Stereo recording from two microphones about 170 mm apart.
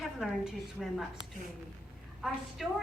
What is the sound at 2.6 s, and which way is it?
Speech, centre (ahead or behind).